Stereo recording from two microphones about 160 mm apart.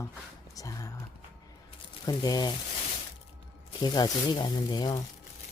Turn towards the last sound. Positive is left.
turn(degrees=25)  # may be behind; listen again after turning